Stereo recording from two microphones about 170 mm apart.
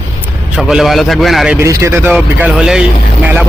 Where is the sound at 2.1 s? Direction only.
5° right (ahead or behind).